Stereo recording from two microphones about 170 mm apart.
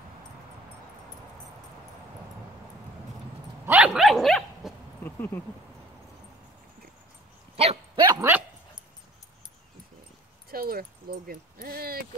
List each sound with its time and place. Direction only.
3.6 s dog: 10° right (ahead or behind); by 5.4 s 10° left (ahead or behind)
7.5 s dog: 35° right (ahead or behind)
8.0 s dog: 20° right (ahead or behind)
10.5 s speech: 60° right (ahead or behind)